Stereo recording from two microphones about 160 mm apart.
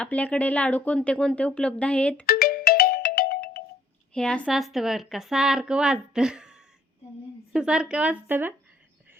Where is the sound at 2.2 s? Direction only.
75° left (ahead or behind).